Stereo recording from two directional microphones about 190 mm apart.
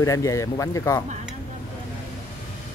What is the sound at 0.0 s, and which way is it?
Speech, 15° left (ahead or behind).